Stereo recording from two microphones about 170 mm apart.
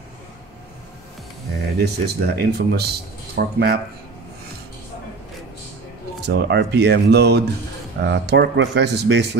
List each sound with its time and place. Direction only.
1.8 s speech: 70° right (ahead or behind)
6.2 s speech: 85° right